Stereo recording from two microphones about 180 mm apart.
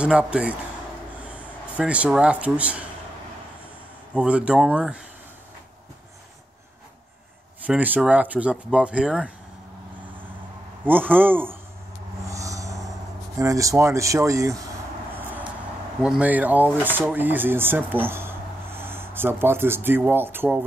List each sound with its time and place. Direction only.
0.0 s speech: 5° right (ahead or behind)
4.1 s speech: 5° right (ahead or behind)
7.6 s speech: 10° right (ahead or behind)
10.9 s speech: 10° right (ahead or behind)
12.3 s a sound: 20° right (ahead or behind)
13.4 s speech: 20° right (ahead or behind)
16.0 s speech: 5° right (ahead or behind)